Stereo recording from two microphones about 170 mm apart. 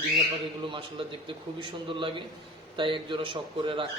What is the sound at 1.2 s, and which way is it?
A man's voice, 30° right (ahead or behind).